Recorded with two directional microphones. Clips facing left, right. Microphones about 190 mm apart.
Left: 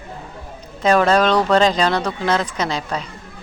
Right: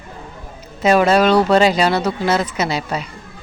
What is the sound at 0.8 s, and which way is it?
Speech, 10° right (ahead or behind).